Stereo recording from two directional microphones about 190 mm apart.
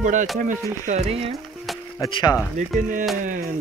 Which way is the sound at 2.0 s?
20° left (ahead or behind).